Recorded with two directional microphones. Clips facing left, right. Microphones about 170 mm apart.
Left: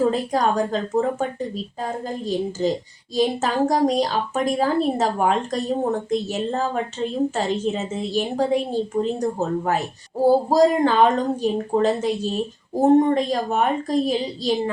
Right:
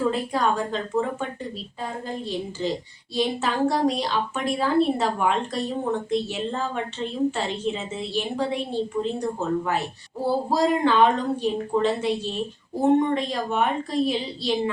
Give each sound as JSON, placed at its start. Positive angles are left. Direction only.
{"t": 0.0, "sound": "a woman's voice", "side_deg": 40}